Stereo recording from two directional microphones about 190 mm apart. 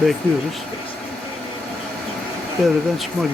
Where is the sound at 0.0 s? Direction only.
Centre (ahead or behind).